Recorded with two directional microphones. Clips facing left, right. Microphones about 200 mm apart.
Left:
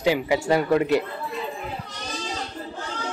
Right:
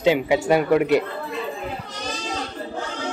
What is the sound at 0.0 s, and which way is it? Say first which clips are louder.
Speech: right 3 dB; 20° right (ahead or behind).